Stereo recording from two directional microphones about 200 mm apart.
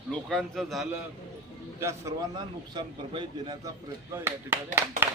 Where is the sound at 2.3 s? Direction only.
25° right (ahead or behind).